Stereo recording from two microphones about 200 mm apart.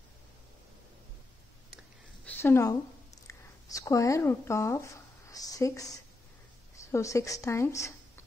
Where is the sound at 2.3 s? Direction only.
10° left (ahead or behind).